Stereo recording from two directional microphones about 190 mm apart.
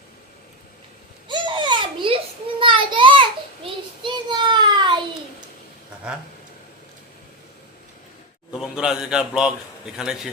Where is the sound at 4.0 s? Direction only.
25° right (ahead or behind).